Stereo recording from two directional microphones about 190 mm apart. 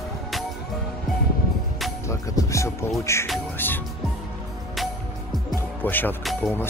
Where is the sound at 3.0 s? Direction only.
15° left (ahead or behind).